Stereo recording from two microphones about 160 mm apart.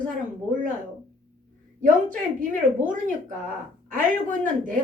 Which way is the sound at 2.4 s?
55° right (ahead or behind).